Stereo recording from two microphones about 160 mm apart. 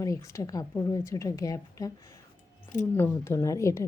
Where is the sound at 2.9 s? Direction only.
15° left (ahead or behind).